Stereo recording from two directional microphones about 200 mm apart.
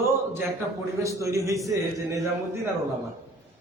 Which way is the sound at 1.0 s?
15° right (ahead or behind).